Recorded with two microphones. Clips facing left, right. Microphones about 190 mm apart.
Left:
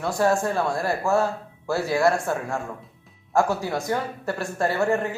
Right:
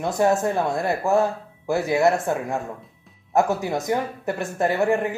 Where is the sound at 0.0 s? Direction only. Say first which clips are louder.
Right 2 dB; 20° right (ahead or behind).